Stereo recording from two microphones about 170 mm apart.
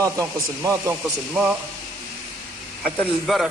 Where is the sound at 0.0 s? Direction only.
15° right (ahead or behind).